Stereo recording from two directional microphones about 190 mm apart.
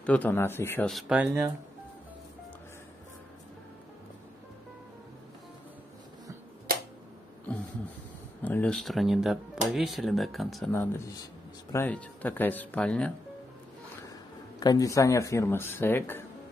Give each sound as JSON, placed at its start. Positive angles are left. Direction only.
{"t": 0.0, "sound": "speech", "side_deg": 10}
{"t": 8.4, "sound": "speech", "side_deg": 10}
{"t": 14.6, "sound": "speech", "side_deg": 20}